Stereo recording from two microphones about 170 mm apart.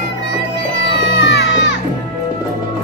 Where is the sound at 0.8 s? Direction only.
90° left.